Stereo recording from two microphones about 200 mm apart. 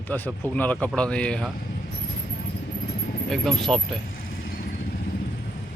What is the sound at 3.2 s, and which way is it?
Speech, centre (ahead or behind).